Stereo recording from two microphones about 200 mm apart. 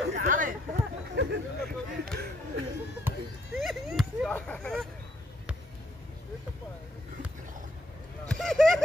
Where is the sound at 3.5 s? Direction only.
Centre (ahead or behind).